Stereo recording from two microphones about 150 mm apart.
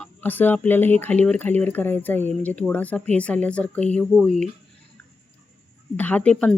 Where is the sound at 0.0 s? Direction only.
10° left (ahead or behind).